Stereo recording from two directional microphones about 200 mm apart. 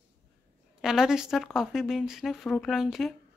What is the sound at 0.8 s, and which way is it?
Speech, 5° right (ahead or behind).